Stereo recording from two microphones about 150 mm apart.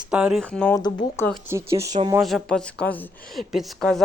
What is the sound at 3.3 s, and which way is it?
Music, centre (ahead or behind).